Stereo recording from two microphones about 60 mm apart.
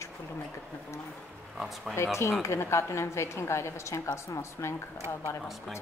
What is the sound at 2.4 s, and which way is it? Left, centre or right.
A woman's voice, left.